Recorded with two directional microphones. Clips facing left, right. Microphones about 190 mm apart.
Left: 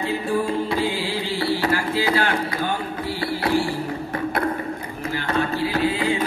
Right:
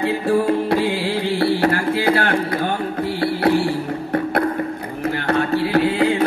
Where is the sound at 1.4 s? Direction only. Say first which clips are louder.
Right 4 dB; 60° right (ahead or behind).